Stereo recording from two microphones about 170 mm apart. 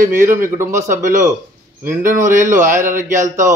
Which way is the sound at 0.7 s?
50° right (ahead or behind).